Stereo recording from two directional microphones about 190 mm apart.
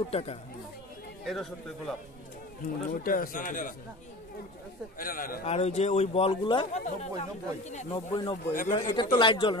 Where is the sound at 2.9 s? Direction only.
45° left (ahead or behind).